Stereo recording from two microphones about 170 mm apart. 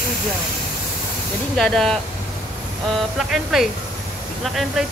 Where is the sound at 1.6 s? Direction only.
5° left (ahead or behind).